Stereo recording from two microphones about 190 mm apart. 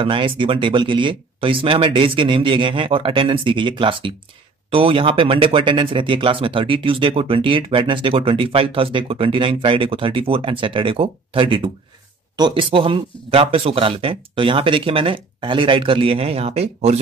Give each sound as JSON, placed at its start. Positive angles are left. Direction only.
{"t": 0.0, "sound": "speech", "side_deg": -25}